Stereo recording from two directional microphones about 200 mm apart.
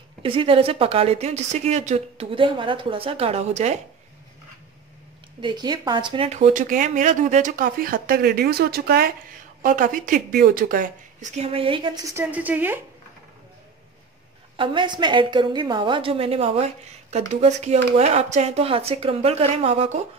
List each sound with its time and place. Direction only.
0.2 s a woman's voice: 25° right (ahead or behind)
5.4 s speech: 20° right (ahead or behind)
14.6 s a woman's voice: 25° right (ahead or behind)